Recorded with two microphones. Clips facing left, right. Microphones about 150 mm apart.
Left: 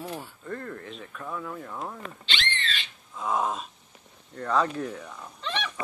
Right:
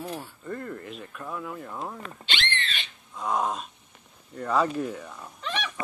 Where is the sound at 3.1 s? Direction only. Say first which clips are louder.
Even; centre (ahead or behind).